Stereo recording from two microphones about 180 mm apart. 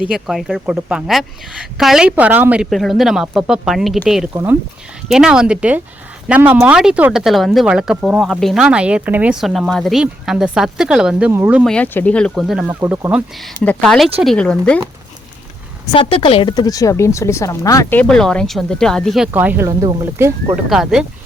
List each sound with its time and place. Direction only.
0.0 s speech: centre (ahead or behind)
11.7 s speech: 5° left (ahead or behind)
12.3 s speech: 5° right (ahead or behind)
13.6 s speech: 5° left (ahead or behind)
15.9 s a woman's voice: 30° left (ahead or behind)
18.0 s speech: 5° left (ahead or behind); by 20.6 s 15° right (ahead or behind)
20.7 s speech: 5° right (ahead or behind)